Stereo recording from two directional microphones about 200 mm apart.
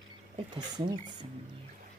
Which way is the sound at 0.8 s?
20° right (ahead or behind).